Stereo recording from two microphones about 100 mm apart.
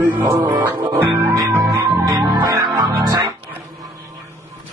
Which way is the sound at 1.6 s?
35° right (ahead or behind).